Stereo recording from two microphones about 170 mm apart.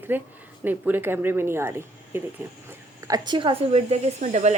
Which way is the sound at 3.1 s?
25° right (ahead or behind).